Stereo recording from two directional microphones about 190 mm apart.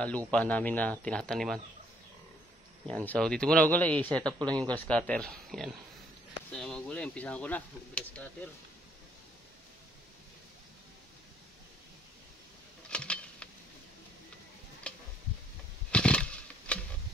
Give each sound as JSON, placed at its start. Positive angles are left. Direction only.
{"t": 0.3, "sound": "speech", "side_deg": 5}
{"t": 2.9, "sound": "speech", "side_deg": 5}
{"t": 4.2, "sound": "speech", "side_deg": -20}
{"t": 4.6, "sound": "speech", "side_deg": 5}
{"t": 12.9, "sound": "a sound", "side_deg": 5}
{"t": 14.8, "sound": "tick-tock", "side_deg": 5}
{"t": 15.9, "sound": "a sound", "side_deg": 5}